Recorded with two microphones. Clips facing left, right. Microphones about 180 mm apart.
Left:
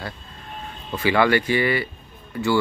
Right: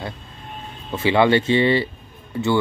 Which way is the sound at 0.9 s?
25° right (ahead or behind).